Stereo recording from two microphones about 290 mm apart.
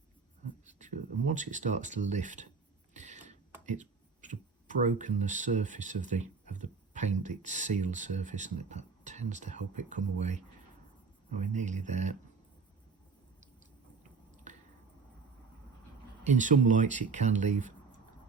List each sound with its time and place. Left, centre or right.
0.7 s speech: right
2.9 s a sound: right
3.7 s speech: right
16.2 s speech: right